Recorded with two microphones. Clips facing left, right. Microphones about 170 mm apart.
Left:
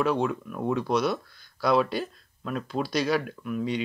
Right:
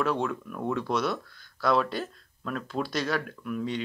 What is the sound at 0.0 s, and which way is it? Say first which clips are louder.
Speech: left 3 dB; 10° left (ahead or behind).